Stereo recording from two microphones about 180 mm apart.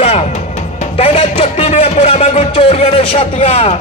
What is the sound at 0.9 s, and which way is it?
Speech, 35° left (ahead or behind).